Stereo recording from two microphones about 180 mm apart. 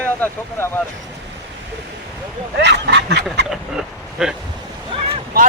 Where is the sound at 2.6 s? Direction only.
70° right (ahead or behind).